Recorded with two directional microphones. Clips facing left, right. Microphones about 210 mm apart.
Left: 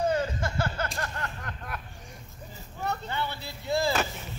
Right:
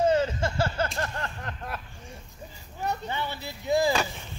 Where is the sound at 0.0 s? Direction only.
25° right (ahead or behind).